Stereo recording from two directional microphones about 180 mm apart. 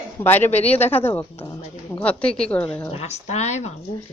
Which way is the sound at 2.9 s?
35° left (ahead or behind).